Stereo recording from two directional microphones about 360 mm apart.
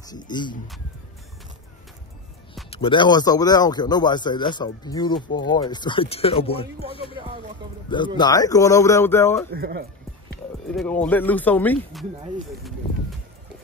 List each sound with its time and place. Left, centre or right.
0.2 s speech: centre
2.7 s speech: centre
8.2 s speech: centre
9.5 s speech: right
10.8 s speech: centre